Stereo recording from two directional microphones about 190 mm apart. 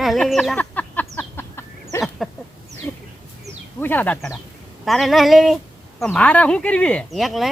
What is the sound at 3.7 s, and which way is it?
Speech, 10° left (ahead or behind).